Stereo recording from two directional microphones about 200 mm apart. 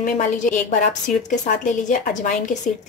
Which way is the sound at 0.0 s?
40° left (ahead or behind).